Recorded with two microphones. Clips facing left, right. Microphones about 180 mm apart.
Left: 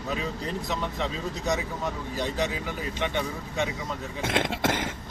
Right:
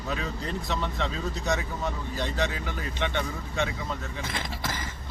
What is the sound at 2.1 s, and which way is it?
Speech, 10° left (ahead or behind).